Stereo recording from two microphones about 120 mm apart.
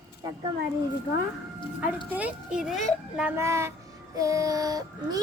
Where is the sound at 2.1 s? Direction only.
10° right (ahead or behind).